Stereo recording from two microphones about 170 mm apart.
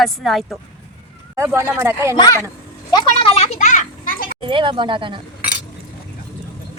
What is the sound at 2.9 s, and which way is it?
Children playing, 30° left (ahead or behind).